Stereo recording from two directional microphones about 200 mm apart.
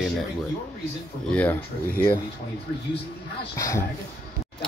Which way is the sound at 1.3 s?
10° left (ahead or behind).